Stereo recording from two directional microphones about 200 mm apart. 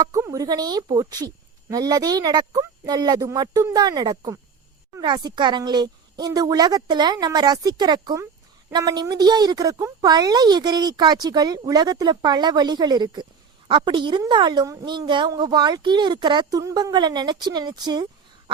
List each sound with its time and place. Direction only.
0.0 s speech: 15° right (ahead or behind)